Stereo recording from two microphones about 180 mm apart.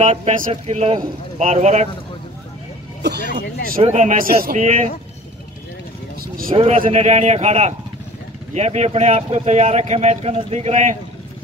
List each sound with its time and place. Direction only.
0.0 s speech: 35° right (ahead or behind)
3.0 s speech: 65° right (ahead or behind)
3.8 s a man's voice: 40° right (ahead or behind)
4.6 s speech: 40° right (ahead or behind)
6.2 s vehicle: 50° right (ahead or behind)
6.5 s speech: 35° right (ahead or behind)